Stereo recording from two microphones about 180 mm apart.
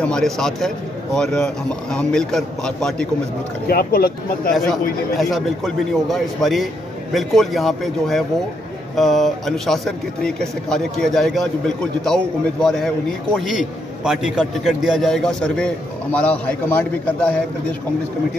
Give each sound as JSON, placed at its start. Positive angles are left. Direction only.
{"t": 0.0, "sound": "speech", "side_deg": 5}
{"t": 3.6, "sound": "speech", "side_deg": 60}
{"t": 5.1, "sound": "speech", "side_deg": 0}
{"t": 14.0, "sound": "speech", "side_deg": -5}